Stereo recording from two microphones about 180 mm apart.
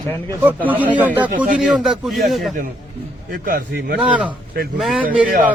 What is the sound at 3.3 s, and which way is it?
Speech, 55° right (ahead or behind).